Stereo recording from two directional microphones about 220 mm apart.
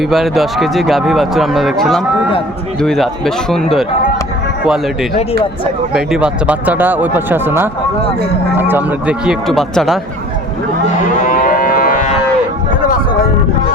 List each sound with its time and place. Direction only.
0.0 s speech: centre (ahead or behind)
5.9 s speech: 5° right (ahead or behind)
11.3 s cattle: 40° left (ahead or behind)